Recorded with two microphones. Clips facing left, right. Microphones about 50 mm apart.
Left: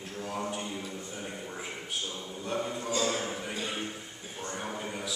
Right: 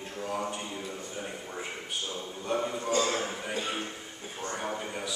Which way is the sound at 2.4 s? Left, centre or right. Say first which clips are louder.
Right 3 dB; centre.